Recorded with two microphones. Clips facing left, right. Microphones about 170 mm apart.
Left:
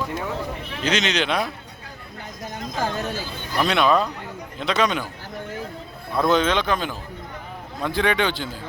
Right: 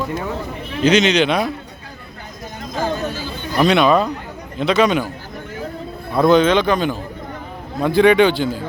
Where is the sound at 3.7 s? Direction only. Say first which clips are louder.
Right 4 dB; centre (ahead or behind).